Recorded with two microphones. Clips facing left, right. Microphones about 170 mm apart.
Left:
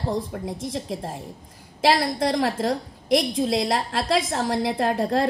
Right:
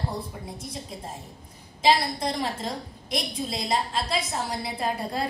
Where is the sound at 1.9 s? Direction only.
90° left.